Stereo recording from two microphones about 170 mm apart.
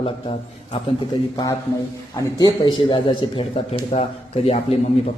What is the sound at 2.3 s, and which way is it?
A man's voice, 25° left (ahead or behind).